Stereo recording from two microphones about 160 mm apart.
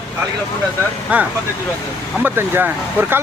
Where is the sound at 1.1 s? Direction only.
10° right (ahead or behind).